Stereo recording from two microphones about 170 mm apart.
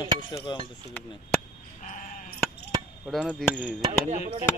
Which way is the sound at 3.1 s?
5° left (ahead or behind).